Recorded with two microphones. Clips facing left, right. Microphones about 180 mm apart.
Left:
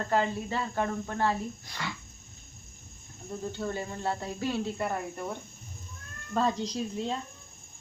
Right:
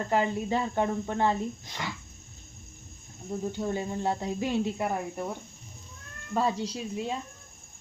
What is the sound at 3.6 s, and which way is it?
Speech, 15° right (ahead or behind).